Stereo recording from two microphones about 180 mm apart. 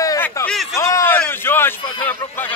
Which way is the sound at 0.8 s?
15° left (ahead or behind).